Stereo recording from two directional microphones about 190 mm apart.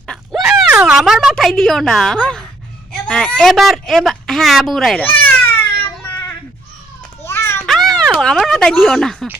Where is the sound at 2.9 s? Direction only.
5° left (ahead or behind).